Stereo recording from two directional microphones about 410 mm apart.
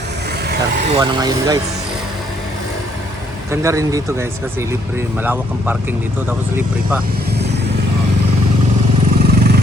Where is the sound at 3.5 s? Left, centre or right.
Centre.